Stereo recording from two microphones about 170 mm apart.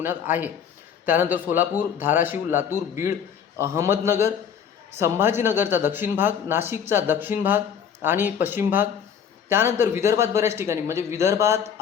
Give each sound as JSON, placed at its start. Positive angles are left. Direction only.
{"t": 0.0, "sound": "speech", "side_deg": -10}